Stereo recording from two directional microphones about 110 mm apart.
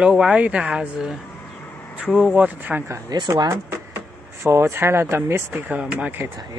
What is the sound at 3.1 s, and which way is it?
Speech, 40° right (ahead or behind).